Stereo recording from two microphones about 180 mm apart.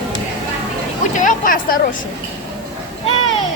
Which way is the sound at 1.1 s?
50° left (ahead or behind).